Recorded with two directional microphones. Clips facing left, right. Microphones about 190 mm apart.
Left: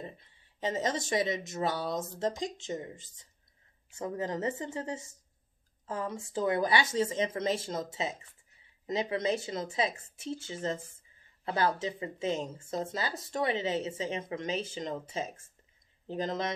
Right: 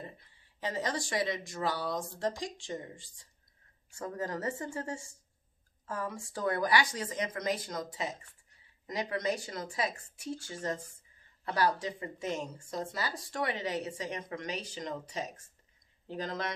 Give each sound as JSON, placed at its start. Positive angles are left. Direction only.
{"t": 0.2, "sound": "speech", "side_deg": 20}